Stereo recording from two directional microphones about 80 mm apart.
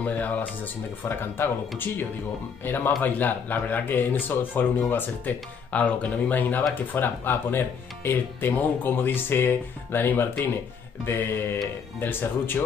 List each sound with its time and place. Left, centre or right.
0.0 s speech: left